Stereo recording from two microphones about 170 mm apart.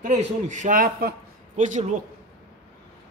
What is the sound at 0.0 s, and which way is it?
A man's voice, 45° right (ahead or behind).